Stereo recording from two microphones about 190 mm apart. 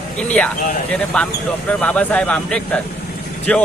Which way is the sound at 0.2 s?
5° left (ahead or behind).